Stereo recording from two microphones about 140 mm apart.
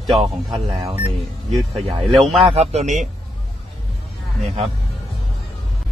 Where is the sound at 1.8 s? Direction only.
Centre (ahead or behind).